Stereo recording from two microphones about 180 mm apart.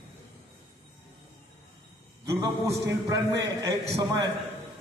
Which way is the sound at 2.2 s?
15° right (ahead or behind).